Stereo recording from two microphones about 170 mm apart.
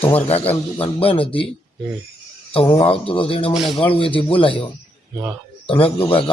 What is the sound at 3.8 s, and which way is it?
Speech, 30° left (ahead or behind).